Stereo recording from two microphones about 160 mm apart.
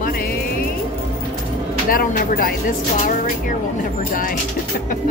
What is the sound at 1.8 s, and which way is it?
Speech, 65° left (ahead or behind).